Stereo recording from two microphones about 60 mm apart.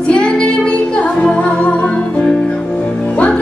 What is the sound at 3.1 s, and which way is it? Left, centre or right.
Music, left.